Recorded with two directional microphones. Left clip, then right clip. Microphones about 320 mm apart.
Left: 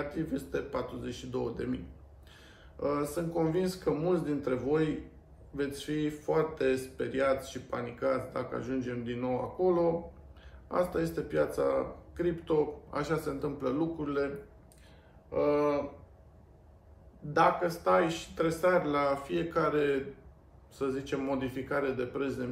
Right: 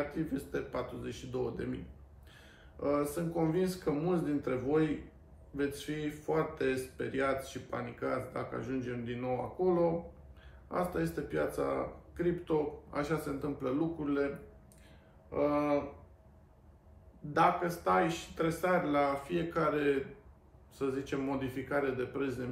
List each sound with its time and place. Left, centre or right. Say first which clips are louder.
0.1 s speech: left 2 dB; centre
2.8 s speech: left 1 dB; centre
17.3 s speech: left 2 dB; centre